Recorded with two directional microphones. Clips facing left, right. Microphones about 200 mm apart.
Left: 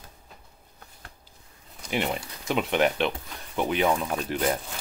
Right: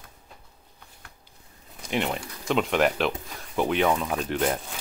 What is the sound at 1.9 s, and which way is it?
Speech, 5° left (ahead or behind).